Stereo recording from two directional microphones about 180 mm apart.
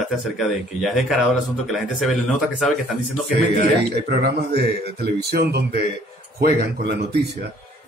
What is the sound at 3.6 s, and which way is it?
A man's voice, 60° right (ahead or behind).